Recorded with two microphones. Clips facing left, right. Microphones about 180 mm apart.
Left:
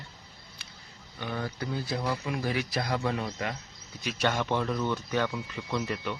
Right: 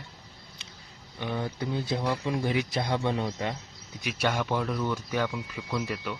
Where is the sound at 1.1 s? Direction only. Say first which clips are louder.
Right 2 dB; 20° right (ahead or behind).